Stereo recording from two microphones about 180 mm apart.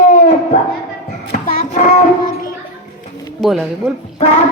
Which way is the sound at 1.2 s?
50° left (ahead or behind).